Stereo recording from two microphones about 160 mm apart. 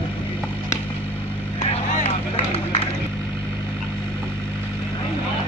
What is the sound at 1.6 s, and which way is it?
Run, 40° left (ahead or behind).